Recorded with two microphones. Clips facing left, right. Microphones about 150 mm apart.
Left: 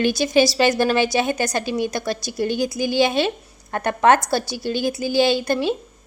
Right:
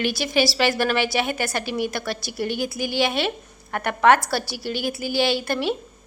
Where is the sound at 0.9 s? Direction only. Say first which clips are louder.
Left 4 dB; 20° left (ahead or behind).